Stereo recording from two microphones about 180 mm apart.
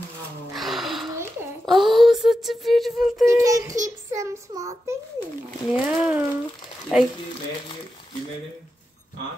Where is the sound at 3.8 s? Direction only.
20° right (ahead or behind).